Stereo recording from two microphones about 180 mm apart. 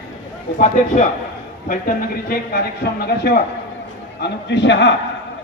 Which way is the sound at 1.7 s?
55° left (ahead or behind).